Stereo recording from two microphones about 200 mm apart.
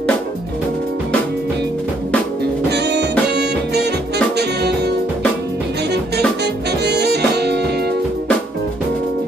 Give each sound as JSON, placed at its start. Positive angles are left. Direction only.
{"t": 2.7, "sound": "music", "side_deg": -55}